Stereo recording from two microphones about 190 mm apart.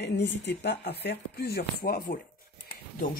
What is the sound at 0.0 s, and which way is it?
Speech, 65° left (ahead or behind).